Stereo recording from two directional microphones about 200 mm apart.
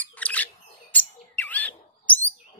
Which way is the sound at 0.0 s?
5° left (ahead or behind).